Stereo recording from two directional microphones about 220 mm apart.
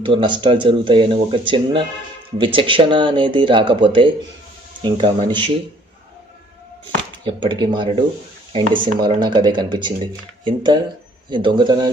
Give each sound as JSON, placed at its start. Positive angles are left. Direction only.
{"t": 0.0, "sound": "speech", "side_deg": -20}
{"t": 7.2, "sound": "speech", "side_deg": -20}